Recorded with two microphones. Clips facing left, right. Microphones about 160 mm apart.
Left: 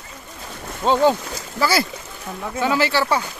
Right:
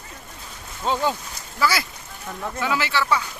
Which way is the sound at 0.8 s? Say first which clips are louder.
Left 6 dB; 30° left (ahead or behind).